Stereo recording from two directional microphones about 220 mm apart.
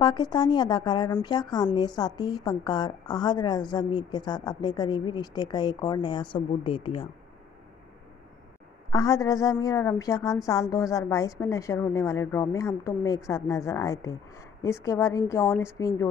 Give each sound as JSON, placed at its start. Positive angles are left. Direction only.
{"t": 0.0, "sound": "a woman's voice", "side_deg": 20}
{"t": 8.9, "sound": "a woman's voice", "side_deg": 15}